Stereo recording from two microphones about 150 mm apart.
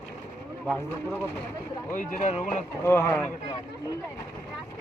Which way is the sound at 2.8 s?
15° left (ahead or behind).